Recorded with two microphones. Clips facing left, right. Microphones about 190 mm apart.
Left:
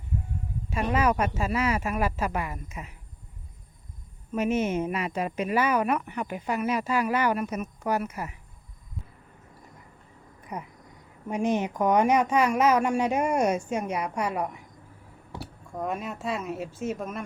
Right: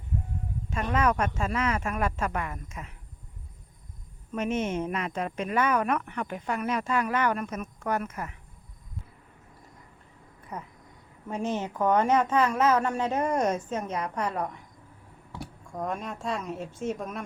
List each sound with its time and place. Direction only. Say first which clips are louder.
0.7 s speech: left 1 dB; 10° left (ahead or behind)
4.3 s speech: left 3 dB; 5° left (ahead or behind)
10.5 s speech: left 2 dB; 15° left (ahead or behind)
15.8 s speech: left 1 dB; 5° left (ahead or behind)